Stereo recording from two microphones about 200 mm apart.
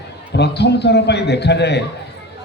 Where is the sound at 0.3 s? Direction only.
55° left (ahead or behind).